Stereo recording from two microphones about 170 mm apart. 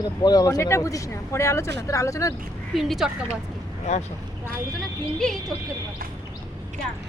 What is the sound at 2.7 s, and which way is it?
Speech, centre (ahead or behind).